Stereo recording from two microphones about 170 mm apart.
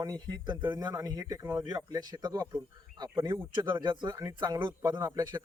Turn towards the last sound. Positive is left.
turn(degrees=-25)  # may be behind; listen again after turning